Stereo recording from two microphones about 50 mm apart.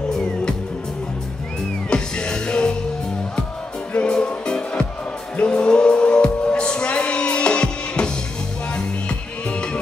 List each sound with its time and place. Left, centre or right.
0.1 s music: centre
1.9 s music: centre
3.9 s music: left
9.5 s music: left